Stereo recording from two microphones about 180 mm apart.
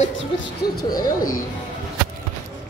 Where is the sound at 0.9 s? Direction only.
50° left (ahead or behind).